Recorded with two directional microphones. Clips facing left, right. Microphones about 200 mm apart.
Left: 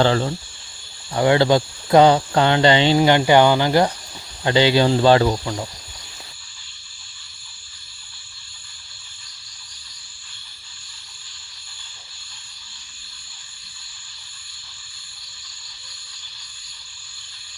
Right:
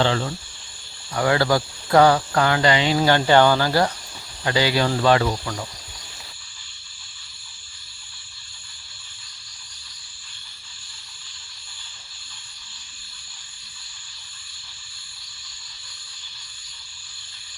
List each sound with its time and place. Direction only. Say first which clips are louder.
0.0 s speech: left 4 dB; 35° left (ahead or behind)
1.1 s speech: left 4 dB; 20° left (ahead or behind)
3.0 s speech: even; 15° left (ahead or behind)